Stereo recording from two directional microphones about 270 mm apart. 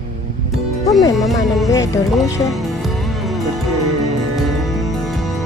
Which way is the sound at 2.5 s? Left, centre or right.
Centre.